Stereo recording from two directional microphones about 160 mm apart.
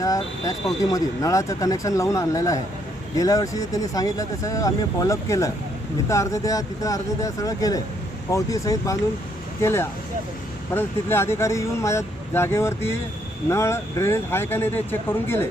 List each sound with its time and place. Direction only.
0.0 s speech: 20° left (ahead or behind)